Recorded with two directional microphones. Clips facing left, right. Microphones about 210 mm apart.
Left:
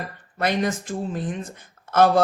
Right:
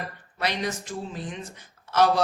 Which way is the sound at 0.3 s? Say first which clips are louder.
Left 6 dB; 50° left (ahead or behind).